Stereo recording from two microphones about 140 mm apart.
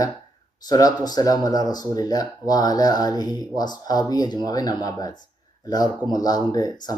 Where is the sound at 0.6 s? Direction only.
25° left (ahead or behind).